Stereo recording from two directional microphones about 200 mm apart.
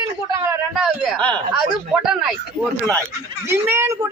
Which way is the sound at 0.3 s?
15° right (ahead or behind).